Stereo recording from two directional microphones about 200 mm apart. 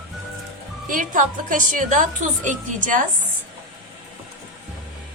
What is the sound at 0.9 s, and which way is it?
A woman's voice, 40° right (ahead or behind).